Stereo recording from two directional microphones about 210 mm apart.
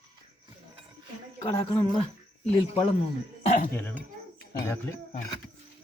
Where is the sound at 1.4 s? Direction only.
15° left (ahead or behind).